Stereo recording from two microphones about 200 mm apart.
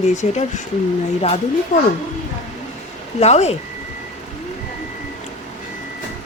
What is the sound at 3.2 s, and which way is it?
Speech, 35° left (ahead or behind).